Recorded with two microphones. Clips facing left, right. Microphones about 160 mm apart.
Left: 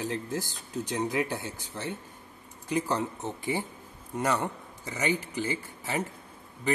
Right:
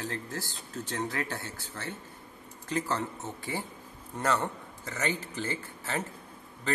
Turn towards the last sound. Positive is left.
turn(degrees=15)  # may be behind; listen again after turning